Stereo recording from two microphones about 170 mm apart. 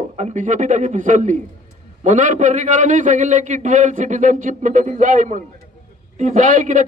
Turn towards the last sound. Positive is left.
turn(degrees=-45)  # may be behind; listen again after turning